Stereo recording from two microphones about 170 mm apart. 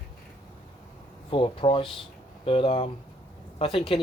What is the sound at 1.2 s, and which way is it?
Speech, 30° left (ahead or behind).